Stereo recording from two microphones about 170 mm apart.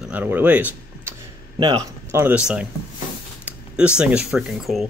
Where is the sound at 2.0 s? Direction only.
10° right (ahead or behind).